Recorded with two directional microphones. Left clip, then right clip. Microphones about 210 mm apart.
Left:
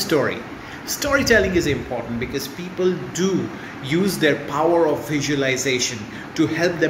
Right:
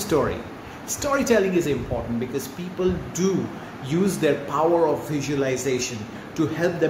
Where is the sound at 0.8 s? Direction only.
20° right (ahead or behind).